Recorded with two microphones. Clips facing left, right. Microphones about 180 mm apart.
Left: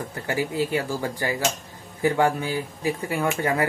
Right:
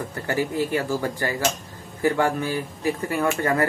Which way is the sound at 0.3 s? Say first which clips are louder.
Right 1 dB; 15° left (ahead or behind).